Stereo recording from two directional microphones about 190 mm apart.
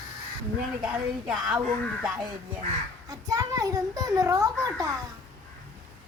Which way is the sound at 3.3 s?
20° right (ahead or behind).